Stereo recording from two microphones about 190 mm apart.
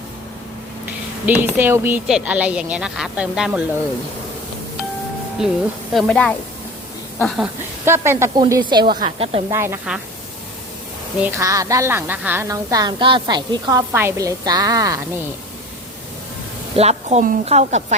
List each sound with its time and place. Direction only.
1.2 s a woman's voice: 10° right (ahead or behind)
5.9 s speech: centre (ahead or behind)
7.9 s a woman's voice: 15° right (ahead or behind)
9.0 s a woman's voice: 30° right (ahead or behind)
9.5 s a woman's voice: 15° right (ahead or behind)
11.2 s a woman's voice: 15° right (ahead or behind)
16.7 s a woman's voice: 35° right (ahead or behind)